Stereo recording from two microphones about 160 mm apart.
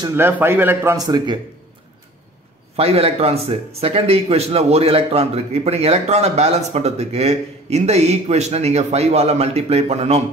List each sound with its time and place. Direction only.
0.1 s a man's voice: 15° right (ahead or behind)
0.9 s speech: 25° right (ahead or behind)
2.7 s speech: 40° right (ahead or behind)